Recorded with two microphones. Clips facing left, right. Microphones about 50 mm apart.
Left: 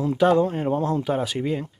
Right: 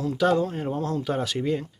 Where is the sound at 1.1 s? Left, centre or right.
Centre.